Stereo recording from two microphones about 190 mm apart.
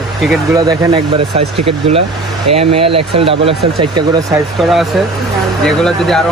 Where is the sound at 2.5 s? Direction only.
30° right (ahead or behind).